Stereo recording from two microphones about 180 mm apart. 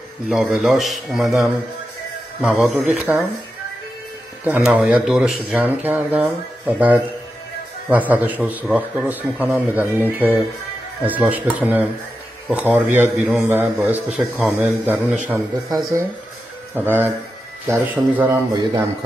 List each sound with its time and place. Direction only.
0.3 s speech: centre (ahead or behind)
4.5 s a man's voice: 5° right (ahead or behind)
16.7 s a man's voice: 10° right (ahead or behind)
18.5 s speech: 20° right (ahead or behind)